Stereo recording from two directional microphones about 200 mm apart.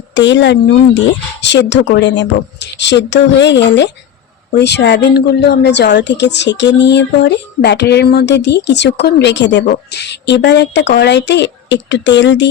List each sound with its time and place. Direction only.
0.1 s speech: 65° left (ahead or behind)